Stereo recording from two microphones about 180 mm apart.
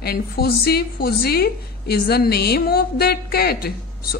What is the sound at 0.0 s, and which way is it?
A woman's voice, 60° left (ahead or behind).